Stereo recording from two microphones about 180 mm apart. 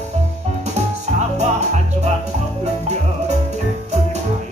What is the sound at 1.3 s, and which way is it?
Music, 40° right (ahead or behind).